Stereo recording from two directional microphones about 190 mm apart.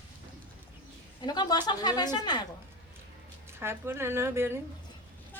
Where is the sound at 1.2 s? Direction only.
20° left (ahead or behind).